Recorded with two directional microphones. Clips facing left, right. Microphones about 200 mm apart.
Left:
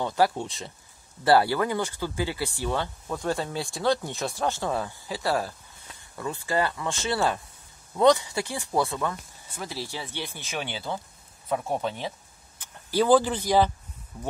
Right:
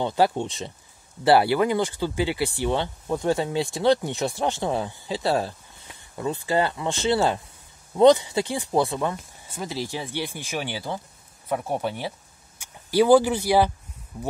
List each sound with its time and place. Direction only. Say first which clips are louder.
0.0 s speech: right 2 dB; 20° right (ahead or behind)